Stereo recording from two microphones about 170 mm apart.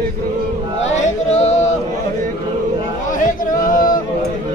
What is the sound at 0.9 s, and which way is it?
Singing, 45° left (ahead or behind).